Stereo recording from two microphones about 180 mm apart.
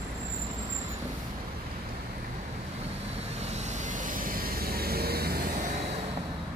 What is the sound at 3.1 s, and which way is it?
Vehicle, 40° right (ahead or behind).